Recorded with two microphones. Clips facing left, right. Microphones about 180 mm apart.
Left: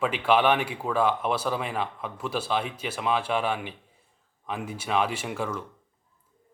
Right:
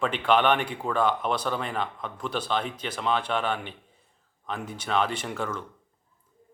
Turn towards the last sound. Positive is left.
turn(degrees=10)  # may be behind; listen again after turning